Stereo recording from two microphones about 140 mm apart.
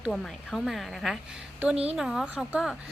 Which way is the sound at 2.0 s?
5° right (ahead or behind).